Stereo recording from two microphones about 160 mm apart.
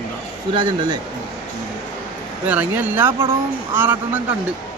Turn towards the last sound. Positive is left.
turn(degrees=-10)  # may be behind; listen again after turning